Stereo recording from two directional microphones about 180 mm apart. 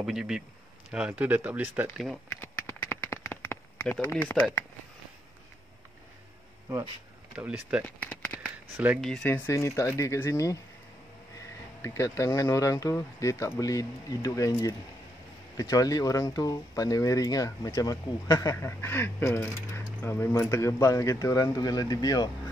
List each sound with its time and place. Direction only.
0.0 s speech: 5° right (ahead or behind)
2.4 s a sound: 15° left (ahead or behind)
7.3 s speech: 5° right (ahead or behind)
7.8 s a sound: 10° left (ahead or behind)
8.7 s speech: 10° right (ahead or behind)
9.0 s speech: 5° left (ahead or behind)
9.5 s speech: 15° left (ahead or behind)